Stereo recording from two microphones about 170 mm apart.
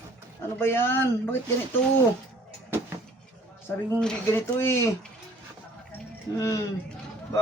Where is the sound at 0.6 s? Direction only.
15° left (ahead or behind).